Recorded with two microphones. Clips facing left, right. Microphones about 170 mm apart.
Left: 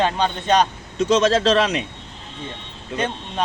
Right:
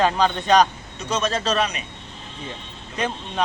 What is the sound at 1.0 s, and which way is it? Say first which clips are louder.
Speech: left 8 dB; 90° left.